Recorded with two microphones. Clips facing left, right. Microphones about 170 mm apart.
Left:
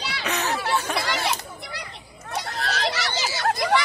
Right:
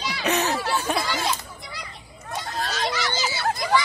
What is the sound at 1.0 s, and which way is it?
Chatter, 75° left (ahead or behind).